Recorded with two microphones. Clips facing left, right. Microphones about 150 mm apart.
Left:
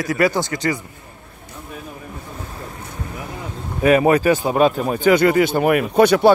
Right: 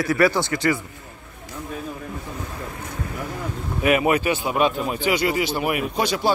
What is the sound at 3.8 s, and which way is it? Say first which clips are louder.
Speech: left 5 dB; 35° left (ahead or behind).